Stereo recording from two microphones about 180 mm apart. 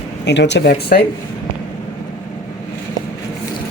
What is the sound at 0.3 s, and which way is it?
Speech, 75° left (ahead or behind).